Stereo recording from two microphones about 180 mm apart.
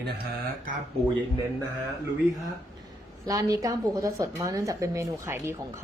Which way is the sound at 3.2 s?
20° right (ahead or behind).